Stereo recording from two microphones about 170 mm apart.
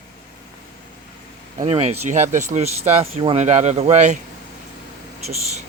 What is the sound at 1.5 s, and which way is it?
Speech, 35° right (ahead or behind).